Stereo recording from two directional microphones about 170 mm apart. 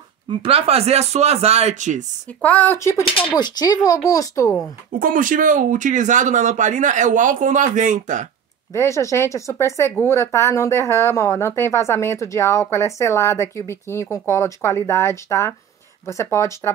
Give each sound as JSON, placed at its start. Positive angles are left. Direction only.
{"t": 0.3, "sound": "speech", "side_deg": -30}
{"t": 2.2, "sound": "speech", "side_deg": 10}
{"t": 4.9, "sound": "speech", "side_deg": -55}
{"t": 8.7, "sound": "speech", "side_deg": 15}